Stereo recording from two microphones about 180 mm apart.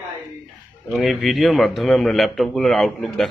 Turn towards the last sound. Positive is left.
turn(degrees=0)  # may be behind; listen again after turning